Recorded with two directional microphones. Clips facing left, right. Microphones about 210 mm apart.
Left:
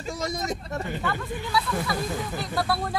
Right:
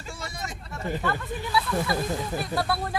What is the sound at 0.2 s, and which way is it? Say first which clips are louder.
Speech: left 10 dB; 40° left (ahead or behind).